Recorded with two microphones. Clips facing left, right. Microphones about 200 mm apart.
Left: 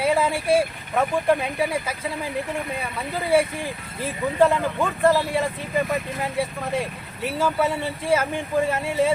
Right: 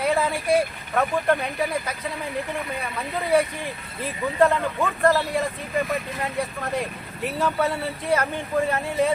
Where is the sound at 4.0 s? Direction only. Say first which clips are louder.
Left 1 dB; 5° left (ahead or behind).